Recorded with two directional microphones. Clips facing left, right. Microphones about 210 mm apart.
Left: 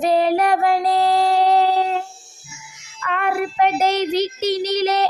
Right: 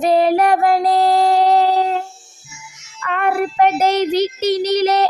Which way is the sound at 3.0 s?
45° right (ahead or behind).